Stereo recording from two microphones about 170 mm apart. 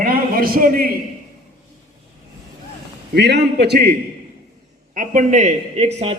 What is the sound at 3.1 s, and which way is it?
Speech, 85° right.